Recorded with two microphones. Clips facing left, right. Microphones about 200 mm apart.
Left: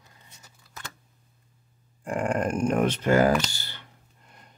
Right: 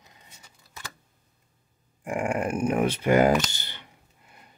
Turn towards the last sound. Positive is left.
turn(degrees=-5)  # may be behind; listen again after turning